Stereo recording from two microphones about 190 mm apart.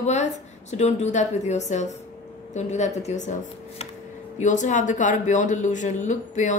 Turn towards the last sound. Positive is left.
turn(degrees=40)  # may be behind; listen again after turning